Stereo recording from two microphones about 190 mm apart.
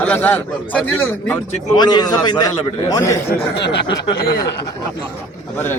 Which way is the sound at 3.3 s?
60° left (ahead or behind).